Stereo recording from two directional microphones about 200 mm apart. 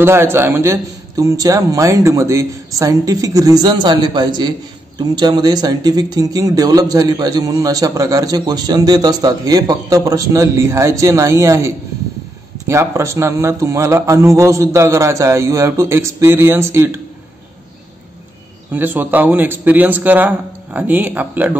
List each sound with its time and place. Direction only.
0.0 s a man's voice: 10° right (ahead or behind)
18.7 s a man's voice: 10° right (ahead or behind)